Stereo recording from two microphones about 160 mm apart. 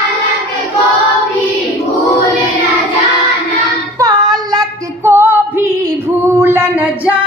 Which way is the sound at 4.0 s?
20° right (ahead or behind).